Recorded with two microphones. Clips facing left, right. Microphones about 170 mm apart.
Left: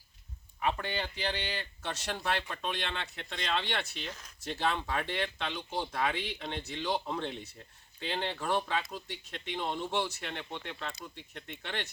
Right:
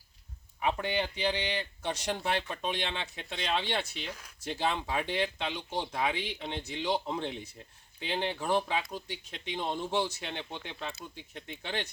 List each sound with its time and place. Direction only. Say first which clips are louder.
0.6 s speech: right 3 dB; 15° right (ahead or behind)